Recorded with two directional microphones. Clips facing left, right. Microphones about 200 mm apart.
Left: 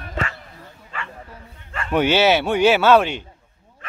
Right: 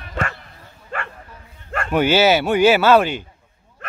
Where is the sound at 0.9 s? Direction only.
50° right (ahead or behind).